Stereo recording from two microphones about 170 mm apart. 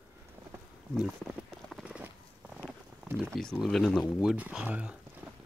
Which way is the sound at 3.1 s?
10° right (ahead or behind).